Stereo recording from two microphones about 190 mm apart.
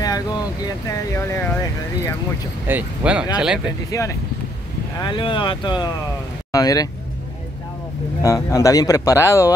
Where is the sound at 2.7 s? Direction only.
5° right (ahead or behind).